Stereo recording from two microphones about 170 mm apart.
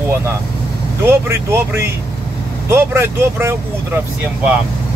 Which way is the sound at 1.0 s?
15° right (ahead or behind).